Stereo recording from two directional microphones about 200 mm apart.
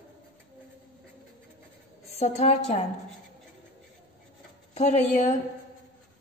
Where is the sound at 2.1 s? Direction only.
30° left (ahead or behind).